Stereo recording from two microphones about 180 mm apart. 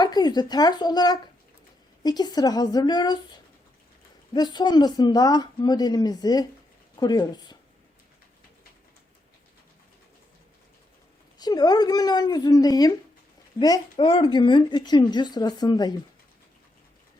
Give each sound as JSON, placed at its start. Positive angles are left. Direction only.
{"t": 0.0, "sound": "speech", "side_deg": 25}
{"t": 4.4, "sound": "speech", "side_deg": 25}
{"t": 11.3, "sound": "speech", "side_deg": 20}